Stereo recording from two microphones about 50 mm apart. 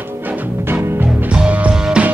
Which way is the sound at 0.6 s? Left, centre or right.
Right.